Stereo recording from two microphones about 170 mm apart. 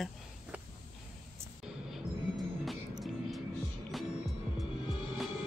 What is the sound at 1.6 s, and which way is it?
Music, 5° right (ahead or behind).